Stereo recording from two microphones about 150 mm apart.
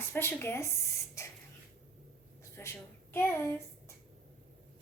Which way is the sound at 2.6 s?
15° left (ahead or behind).